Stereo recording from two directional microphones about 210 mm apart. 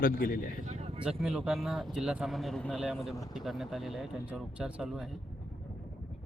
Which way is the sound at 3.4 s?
Centre (ahead or behind).